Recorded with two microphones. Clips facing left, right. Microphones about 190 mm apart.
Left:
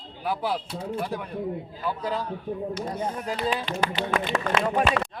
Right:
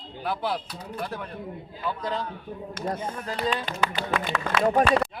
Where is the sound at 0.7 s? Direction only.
25° left (ahead or behind).